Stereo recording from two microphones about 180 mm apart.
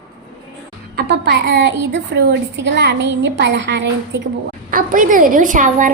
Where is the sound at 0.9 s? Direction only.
70° right (ahead or behind).